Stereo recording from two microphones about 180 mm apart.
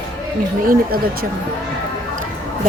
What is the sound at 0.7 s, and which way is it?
Speech, 55° right (ahead or behind).